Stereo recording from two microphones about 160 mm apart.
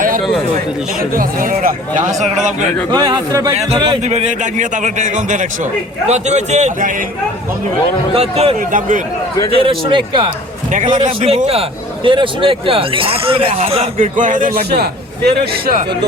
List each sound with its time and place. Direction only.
1.1 s speech: 60° right (ahead or behind)
2.9 s a man's voice: 25° right (ahead or behind)
3.5 s a man's voice: 45° right (ahead or behind)
8.1 s speech: 40° right (ahead or behind)
8.5 s speech: 55° right (ahead or behind)
9.5 s speech: 35° right (ahead or behind)
10.7 s a man's voice: 50° right (ahead or behind)
14.0 s speech: 55° right (ahead or behind)
14.8 s a man's voice: 80° right